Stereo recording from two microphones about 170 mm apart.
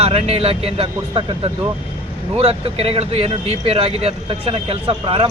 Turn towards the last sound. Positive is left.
turn(degrees=-30)  # may be behind; listen again after turning